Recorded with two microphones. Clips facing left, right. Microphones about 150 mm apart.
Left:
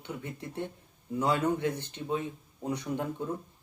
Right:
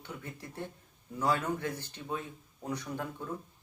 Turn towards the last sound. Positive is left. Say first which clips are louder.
# left 5 dB
turn(degrees=20)  # may be behind; listen again after turning